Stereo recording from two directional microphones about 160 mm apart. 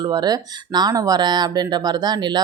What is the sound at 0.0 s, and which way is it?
Speech, 25° right (ahead or behind).